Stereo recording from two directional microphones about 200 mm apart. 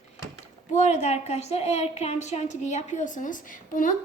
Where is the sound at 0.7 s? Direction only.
35° left (ahead or behind).